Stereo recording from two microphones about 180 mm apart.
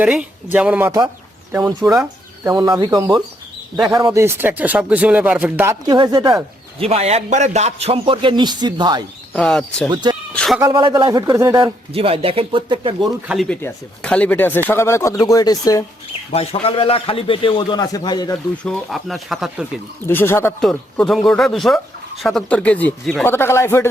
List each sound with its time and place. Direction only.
0.0 s speech: 5° right (ahead or behind)
5.8 s speech: 20° right (ahead or behind)
6.7 s a man's voice: 35° right (ahead or behind)
9.3 s speech: 5° left (ahead or behind)
9.9 s speech: 25° right (ahead or behind)
10.3 s bleat: 5° left (ahead or behind)
10.6 s speech: 25° right (ahead or behind)
11.9 s a man's voice: 30° right (ahead or behind)
13.0 s a man's voice: centre (ahead or behind); by 15.8 s 20° left (ahead or behind)
16.3 s a man's voice: 35° left (ahead or behind)
18.6 s speech: centre (ahead or behind)
20.1 s speech: 15° left (ahead or behind)
20.6 s speech: 5° left (ahead or behind)